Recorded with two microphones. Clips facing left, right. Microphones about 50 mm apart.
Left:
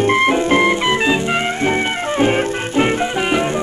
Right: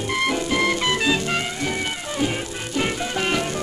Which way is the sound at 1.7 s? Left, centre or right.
Left.